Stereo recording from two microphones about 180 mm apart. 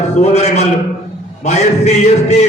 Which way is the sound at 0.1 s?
40° left (ahead or behind).